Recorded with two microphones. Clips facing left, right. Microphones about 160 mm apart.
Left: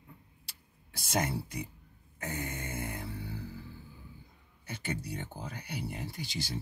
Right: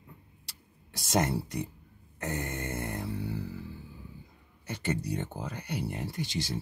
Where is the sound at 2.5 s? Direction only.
60° right (ahead or behind).